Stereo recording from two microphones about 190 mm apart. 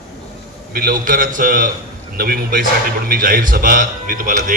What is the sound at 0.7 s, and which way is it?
A man's voice, 50° right (ahead or behind).